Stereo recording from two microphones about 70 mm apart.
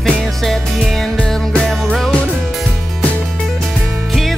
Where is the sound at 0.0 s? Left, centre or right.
Centre.